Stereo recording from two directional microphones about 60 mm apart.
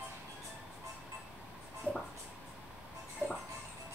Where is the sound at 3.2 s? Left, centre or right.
Right.